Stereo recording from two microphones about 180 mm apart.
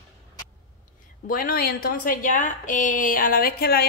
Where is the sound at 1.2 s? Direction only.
50° left (ahead or behind).